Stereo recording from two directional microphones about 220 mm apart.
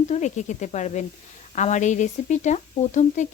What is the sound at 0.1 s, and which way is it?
Speech, 30° left (ahead or behind).